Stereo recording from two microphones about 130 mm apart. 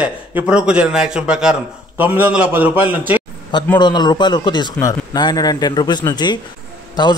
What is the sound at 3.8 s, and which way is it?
A man's voice, 35° left (ahead or behind).